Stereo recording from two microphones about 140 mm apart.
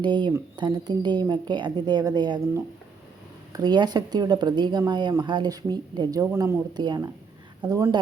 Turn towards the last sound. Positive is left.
turn(degrees=-25)  # may be behind; listen again after turning